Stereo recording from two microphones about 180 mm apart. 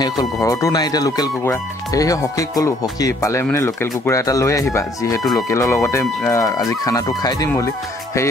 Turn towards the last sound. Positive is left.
turn(degrees=20)  # may be behind; listen again after turning